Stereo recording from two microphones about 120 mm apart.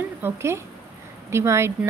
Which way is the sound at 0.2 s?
20° right (ahead or behind).